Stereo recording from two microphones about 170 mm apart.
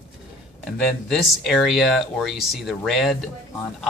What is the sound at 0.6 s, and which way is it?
Speech, centre (ahead or behind).